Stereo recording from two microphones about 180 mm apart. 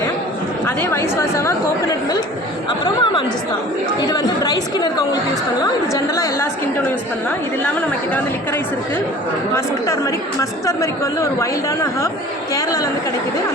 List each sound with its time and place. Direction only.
0.6 s speech: 10° left (ahead or behind)
7.6 s speech: 10° left (ahead or behind)
9.6 s speech: 15° left (ahead or behind)